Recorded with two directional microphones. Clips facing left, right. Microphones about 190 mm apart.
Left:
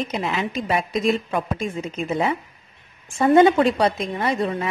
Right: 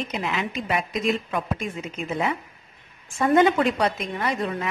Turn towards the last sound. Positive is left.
turn(degrees=30)  # may be behind; listen again after turning